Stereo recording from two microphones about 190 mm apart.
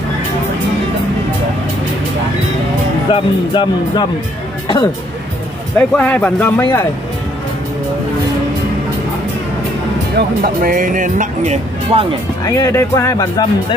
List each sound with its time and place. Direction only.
3.1 s speech: 25° left (ahead or behind)
5.8 s speech: 5° left (ahead or behind)
10.1 s speech: 50° right (ahead or behind); by 12.1 s 30° right (ahead or behind)
12.4 s speech: 15° left (ahead or behind)